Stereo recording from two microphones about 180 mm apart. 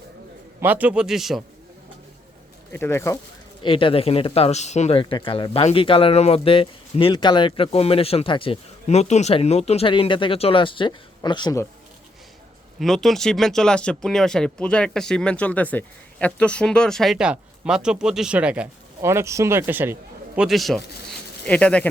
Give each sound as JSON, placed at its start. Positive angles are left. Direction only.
{"t": 0.6, "sound": "speech", "side_deg": -10}
{"t": 2.7, "sound": "speech", "side_deg": 15}
{"t": 3.6, "sound": "speech", "side_deg": 30}
{"t": 12.8, "sound": "speech", "side_deg": 0}